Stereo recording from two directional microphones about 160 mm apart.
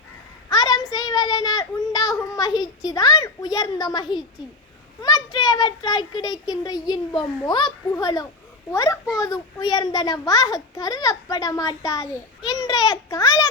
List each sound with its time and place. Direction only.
0.5 s child singing: 25° left (ahead or behind)
2.6 s a child's voice: 25° left (ahead or behind)
5.0 s a child's voice: 25° left (ahead or behind)
12.5 s a sound: 25° left (ahead or behind)